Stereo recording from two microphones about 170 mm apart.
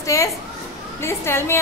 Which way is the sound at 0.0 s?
20° left (ahead or behind).